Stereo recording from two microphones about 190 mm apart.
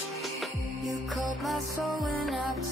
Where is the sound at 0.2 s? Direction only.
Centre (ahead or behind).